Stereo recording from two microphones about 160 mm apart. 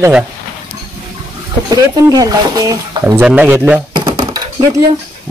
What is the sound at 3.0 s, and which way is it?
Speech, 10° right (ahead or behind).